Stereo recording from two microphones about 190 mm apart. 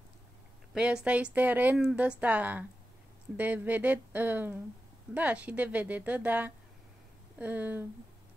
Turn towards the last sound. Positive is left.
turn(degrees=-10)  # may be behind; listen again after turning